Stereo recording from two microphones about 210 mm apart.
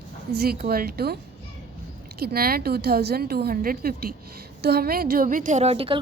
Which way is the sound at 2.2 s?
45° right (ahead or behind).